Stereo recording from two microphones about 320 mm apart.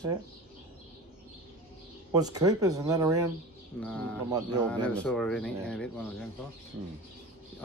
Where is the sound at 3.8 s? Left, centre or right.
Centre.